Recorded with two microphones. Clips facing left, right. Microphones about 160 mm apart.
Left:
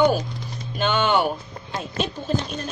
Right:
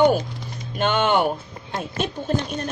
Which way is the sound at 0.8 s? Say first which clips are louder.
Right 1 dB; 55° right (ahead or behind).